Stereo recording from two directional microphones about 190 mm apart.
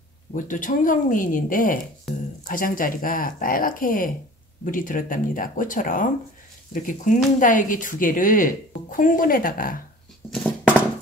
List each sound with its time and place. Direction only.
0.3 s a woman's voice: 45° left (ahead or behind)
2.1 s speech: centre (ahead or behind)
2.4 s a woman's voice: 45° left (ahead or behind)